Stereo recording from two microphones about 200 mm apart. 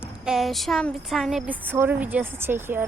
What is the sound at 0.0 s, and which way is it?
A woman's voice, centre (ahead or behind).